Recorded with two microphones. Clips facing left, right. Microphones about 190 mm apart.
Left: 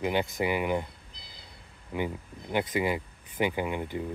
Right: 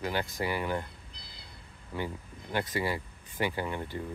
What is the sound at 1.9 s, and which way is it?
Speech, 15° left (ahead or behind).